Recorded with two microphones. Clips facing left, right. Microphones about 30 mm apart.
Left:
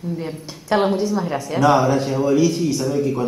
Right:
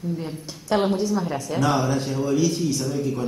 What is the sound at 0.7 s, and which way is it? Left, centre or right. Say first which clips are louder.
A woman's voice: left 3 dB; centre.